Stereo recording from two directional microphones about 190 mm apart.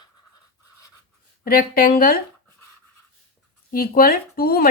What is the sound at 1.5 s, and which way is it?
Speech, 50° left (ahead or behind).